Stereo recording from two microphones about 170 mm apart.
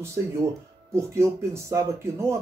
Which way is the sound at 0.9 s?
15° right (ahead or behind).